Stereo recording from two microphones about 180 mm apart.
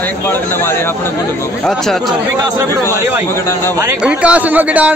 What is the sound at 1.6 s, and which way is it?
Speech, centre (ahead or behind).